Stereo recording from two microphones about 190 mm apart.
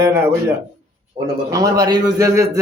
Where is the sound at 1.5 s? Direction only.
20° right (ahead or behind).